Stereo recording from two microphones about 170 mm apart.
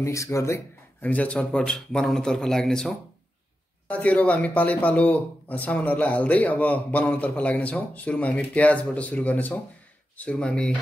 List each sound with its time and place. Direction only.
0.0 s a man's voice: 15° left (ahead or behind)